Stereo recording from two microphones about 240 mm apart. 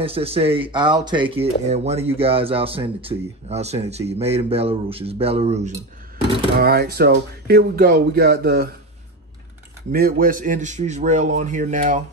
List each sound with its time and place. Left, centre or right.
0.0 s speech: right
6.6 s a man's voice: right
9.8 s a man's voice: right